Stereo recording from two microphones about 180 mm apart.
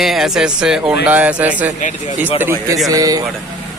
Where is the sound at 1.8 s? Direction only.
45° left (ahead or behind).